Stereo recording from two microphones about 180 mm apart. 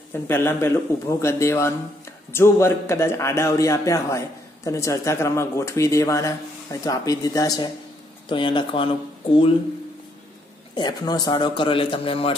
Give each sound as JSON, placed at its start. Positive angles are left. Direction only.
{"t": 0.1, "sound": "a man's voice", "side_deg": 15}
{"t": 10.7, "sound": "a man's voice", "side_deg": 25}